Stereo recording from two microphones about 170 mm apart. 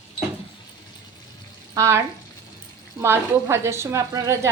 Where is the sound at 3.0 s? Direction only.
15° right (ahead or behind).